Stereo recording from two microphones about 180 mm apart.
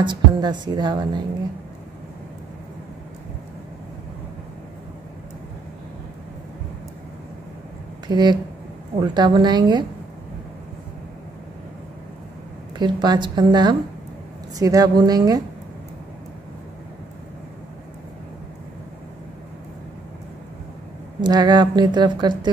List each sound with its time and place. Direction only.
0.0 s speech: 25° right (ahead or behind)
8.1 s speech: 25° right (ahead or behind)
12.7 s speech: 25° right (ahead or behind)
21.2 s speech: 25° right (ahead or behind)